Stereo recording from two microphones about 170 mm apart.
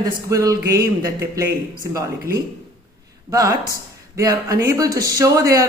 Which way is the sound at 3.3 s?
20° right (ahead or behind).